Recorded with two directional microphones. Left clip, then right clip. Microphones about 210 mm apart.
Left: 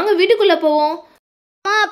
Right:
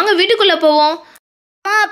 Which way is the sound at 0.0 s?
10° right (ahead or behind).